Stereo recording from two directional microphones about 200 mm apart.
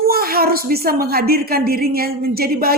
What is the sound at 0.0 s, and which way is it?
Speech, 50° right (ahead or behind).